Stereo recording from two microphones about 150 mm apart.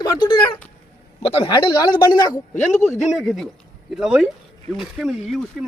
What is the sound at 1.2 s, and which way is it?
Speech, 40° left (ahead or behind).